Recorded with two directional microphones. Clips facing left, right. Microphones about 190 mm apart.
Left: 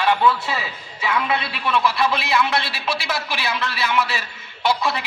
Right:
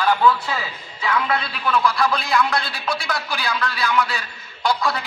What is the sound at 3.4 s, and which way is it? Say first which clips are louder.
Speech: right 2 dB; 25° left (ahead or behind).